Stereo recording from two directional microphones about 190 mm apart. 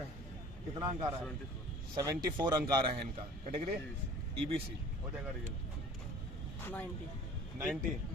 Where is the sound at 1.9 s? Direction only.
20° right (ahead or behind).